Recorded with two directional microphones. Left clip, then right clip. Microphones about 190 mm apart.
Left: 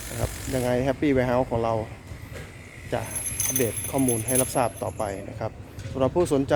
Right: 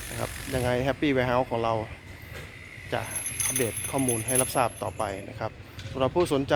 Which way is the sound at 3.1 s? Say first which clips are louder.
Left 2 dB; 60° left (ahead or behind).